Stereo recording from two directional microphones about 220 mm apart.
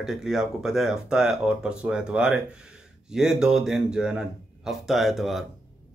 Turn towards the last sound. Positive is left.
turn(degrees=0)  # may be behind; listen again after turning